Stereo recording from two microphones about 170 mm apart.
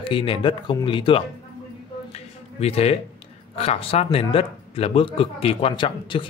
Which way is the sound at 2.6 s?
35° left (ahead or behind).